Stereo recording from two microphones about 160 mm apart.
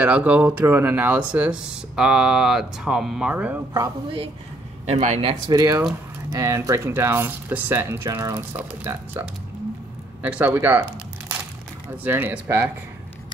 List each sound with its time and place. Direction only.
0.0 s speech: 10° right (ahead or behind)
3.7 s a woman's voice: 20° right (ahead or behind)
4.8 s speech: 40° right (ahead or behind)
5.5 s a woman's voice: 20° right (ahead or behind)
10.2 s speech: 10° right (ahead or behind)
12.0 s speech: 15° right (ahead or behind)